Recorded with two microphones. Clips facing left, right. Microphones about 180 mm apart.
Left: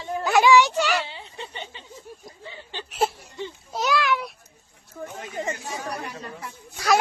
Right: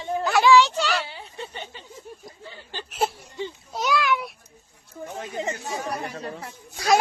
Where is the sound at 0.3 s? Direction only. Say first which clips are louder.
Even; 15° left (ahead or behind).